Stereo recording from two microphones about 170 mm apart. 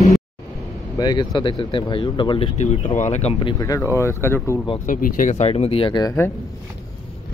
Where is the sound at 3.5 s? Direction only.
20° left (ahead or behind).